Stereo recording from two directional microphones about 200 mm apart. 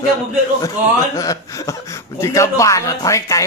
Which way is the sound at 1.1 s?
15° left (ahead or behind).